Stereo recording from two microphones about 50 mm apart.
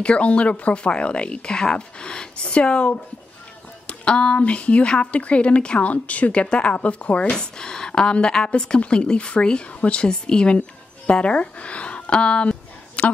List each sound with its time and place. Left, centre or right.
0.0 s a woman's voice: left
7.3 s a woman's voice: centre